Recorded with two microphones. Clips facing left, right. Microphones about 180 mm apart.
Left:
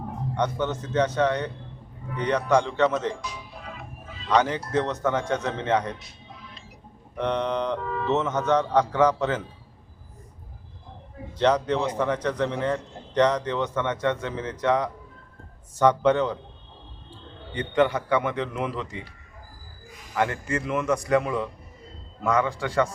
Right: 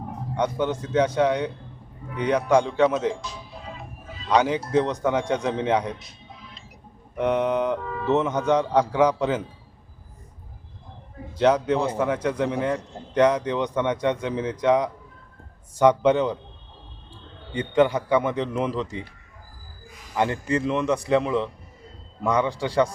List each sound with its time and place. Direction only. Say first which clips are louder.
0.3 s a man's voice: right 2 dB; 10° right (ahead or behind)
3.2 s music: even; 25° right (ahead or behind)
4.3 s a man's voice: right 2 dB; 10° right (ahead or behind)
7.2 s a man's voice: right 4 dB; 10° right (ahead or behind)
11.3 s a man's voice: right 2 dB; 10° right (ahead or behind)
17.7 s a man's voice: right 2 dB; 10° right (ahead or behind)
18.2 s a man's voice: right 3 dB; 30° right (ahead or behind)
20.1 s a man's voice: right 3 dB; 30° right (ahead or behind)